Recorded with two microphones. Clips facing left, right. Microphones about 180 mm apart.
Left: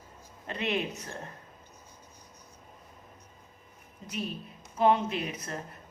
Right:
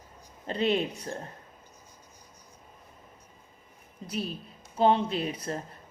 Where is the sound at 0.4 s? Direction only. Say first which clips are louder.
Right 5 dB; 30° right (ahead or behind).